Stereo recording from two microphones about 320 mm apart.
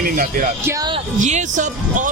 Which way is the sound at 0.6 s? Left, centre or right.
Centre.